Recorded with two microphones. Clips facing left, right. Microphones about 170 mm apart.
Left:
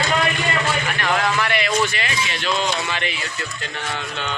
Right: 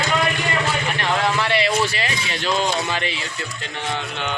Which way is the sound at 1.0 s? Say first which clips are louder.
Even; 25° right (ahead or behind).